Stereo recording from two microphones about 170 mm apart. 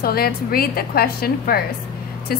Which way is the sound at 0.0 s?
60° left (ahead or behind).